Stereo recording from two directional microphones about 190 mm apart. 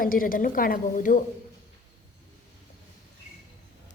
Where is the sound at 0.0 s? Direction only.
50° left (ahead or behind).